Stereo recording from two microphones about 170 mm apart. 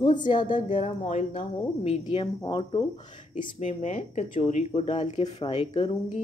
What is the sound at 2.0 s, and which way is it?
Speech, 30° left (ahead or behind).